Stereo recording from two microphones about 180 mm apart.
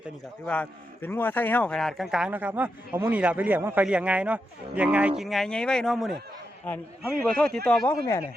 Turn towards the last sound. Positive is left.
turn(degrees=5)  # may be behind; listen again after turning